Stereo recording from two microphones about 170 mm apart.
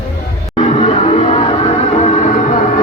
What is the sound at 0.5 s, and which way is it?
Music, 40° left (ahead or behind).